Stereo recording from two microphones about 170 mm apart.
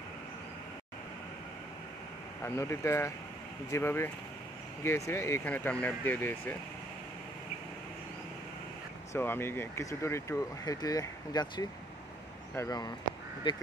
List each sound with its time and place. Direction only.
2.4 s speech: 15° left (ahead or behind)
9.1 s speech: 15° left (ahead or behind); by 13.6 s 30° left (ahead or behind)